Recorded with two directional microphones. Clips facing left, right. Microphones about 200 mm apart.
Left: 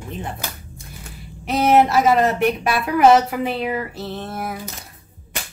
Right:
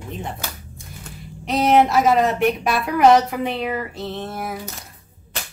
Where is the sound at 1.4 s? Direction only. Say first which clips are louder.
Left 1 dB; 5° left (ahead or behind).